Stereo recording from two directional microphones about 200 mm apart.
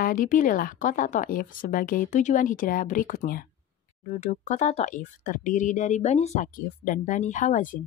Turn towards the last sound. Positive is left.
turn(degrees=40)  # may be behind; listen again after turning